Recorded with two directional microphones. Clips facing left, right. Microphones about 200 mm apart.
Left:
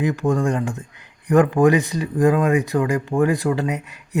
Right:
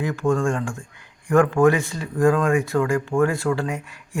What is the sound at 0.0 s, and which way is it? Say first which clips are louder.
Speech: left 1 dB; 20° left (ahead or behind).